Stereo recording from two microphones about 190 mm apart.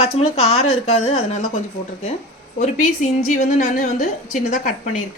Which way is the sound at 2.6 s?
40° left (ahead or behind).